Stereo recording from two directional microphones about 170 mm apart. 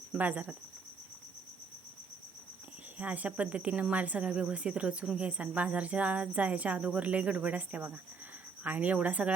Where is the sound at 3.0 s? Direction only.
10° right (ahead or behind).